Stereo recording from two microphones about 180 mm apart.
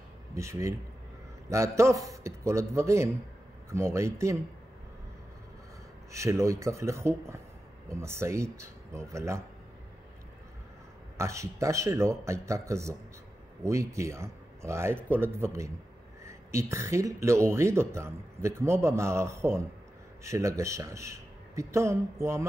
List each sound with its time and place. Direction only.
0.3 s speech: 15° right (ahead or behind)
6.1 s speech: 15° right (ahead or behind)
11.1 s speech: 15° right (ahead or behind)